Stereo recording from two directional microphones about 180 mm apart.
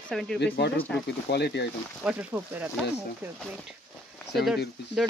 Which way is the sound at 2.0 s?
10° right (ahead or behind).